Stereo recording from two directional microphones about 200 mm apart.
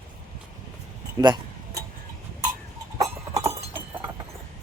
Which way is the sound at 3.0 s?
15° right (ahead or behind).